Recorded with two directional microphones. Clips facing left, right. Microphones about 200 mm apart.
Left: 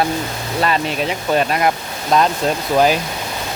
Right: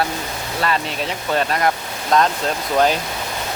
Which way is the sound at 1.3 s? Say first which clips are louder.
Left 2 dB; 15° left (ahead or behind).